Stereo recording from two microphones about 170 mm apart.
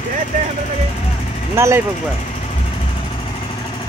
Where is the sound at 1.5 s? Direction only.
15° right (ahead or behind).